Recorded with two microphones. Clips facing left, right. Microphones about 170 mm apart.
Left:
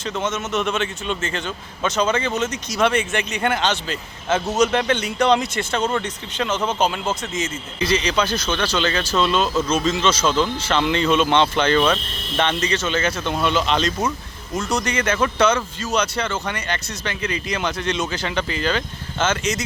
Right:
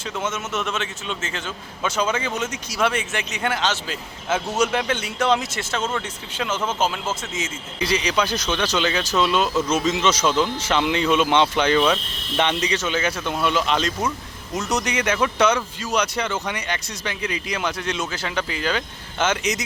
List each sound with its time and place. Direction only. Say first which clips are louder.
0.2 s speech: left 3 dB; 5° right (ahead or behind)
8.9 s speech: left 1 dB; 5° right (ahead or behind)
14.7 s speech: left 1 dB; 15° right (ahead or behind)